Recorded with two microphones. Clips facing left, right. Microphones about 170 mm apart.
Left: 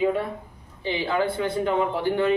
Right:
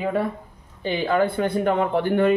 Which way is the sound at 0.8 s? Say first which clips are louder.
Right 4 dB; 50° right (ahead or behind).